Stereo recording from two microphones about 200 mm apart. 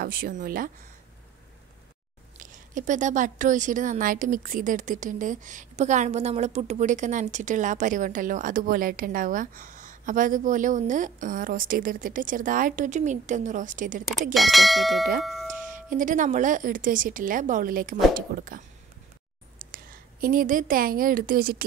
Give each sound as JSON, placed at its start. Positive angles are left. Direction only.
{"t": 0.0, "sound": "speech", "side_deg": -45}
{"t": 2.3, "sound": "a woman's voice", "side_deg": -40}
{"t": 14.3, "sound": "speech", "side_deg": 0}
{"t": 15.6, "sound": "a woman's voice", "side_deg": -40}
{"t": 19.7, "sound": "a woman's voice", "side_deg": -45}